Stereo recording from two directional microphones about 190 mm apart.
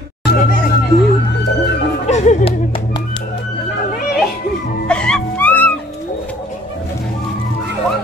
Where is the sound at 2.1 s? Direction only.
40° left (ahead or behind).